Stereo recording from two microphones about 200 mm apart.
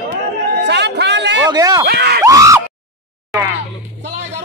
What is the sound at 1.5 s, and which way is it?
Speech, 20° right (ahead or behind).